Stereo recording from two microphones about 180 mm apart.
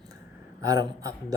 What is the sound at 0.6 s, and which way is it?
Speech, 20° right (ahead or behind).